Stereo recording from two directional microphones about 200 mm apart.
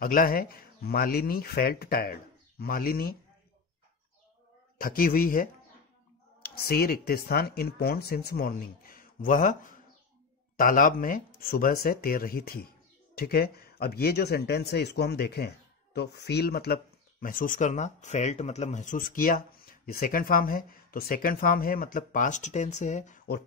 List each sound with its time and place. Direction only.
0.0 s speech: 45° left (ahead or behind)
4.7 s speech: 45° left (ahead or behind)